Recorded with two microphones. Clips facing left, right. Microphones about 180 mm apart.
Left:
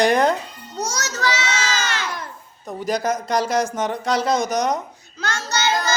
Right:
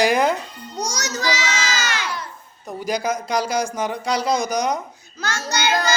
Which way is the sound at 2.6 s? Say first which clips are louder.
Left 1 dB; centre (ahead or behind).